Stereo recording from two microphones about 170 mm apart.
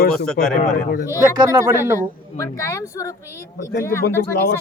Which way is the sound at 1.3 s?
20° right (ahead or behind).